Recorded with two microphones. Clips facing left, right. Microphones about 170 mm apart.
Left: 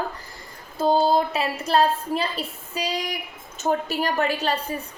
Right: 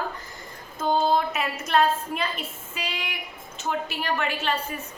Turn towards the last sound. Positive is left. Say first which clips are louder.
# left 3 dB
turn(degrees=35)  # may be behind; listen again after turning